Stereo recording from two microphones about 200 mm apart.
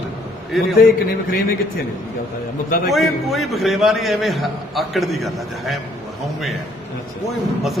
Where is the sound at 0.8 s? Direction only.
50° left (ahead or behind).